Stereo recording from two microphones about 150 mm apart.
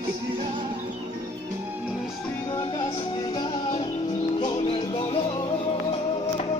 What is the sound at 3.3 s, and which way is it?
Music, 30° left (ahead or behind).